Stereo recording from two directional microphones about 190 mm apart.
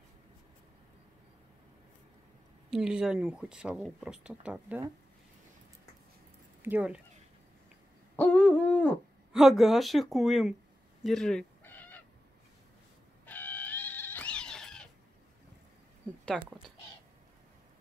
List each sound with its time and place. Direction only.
2.7 s speech: 5° right (ahead or behind)
6.6 s speech: 10° right (ahead or behind)
8.2 s speech: 5° left (ahead or behind)
11.1 s cat: 5° left (ahead or behind)
13.2 s cat: 10° left (ahead or behind)